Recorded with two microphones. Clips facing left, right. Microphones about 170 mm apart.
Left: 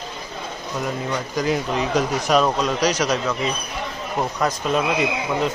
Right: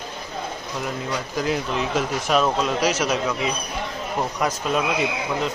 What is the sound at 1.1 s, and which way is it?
A man's voice, centre (ahead or behind).